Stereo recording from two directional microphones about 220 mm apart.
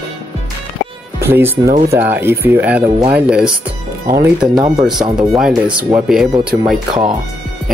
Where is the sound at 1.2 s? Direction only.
10° right (ahead or behind).